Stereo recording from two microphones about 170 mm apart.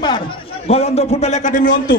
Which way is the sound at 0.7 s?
40° left (ahead or behind).